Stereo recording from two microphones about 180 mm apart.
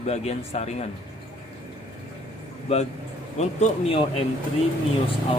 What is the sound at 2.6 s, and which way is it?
Speech, 35° left (ahead or behind).